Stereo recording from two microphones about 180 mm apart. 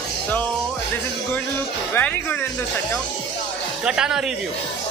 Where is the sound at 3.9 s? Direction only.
5° right (ahead or behind).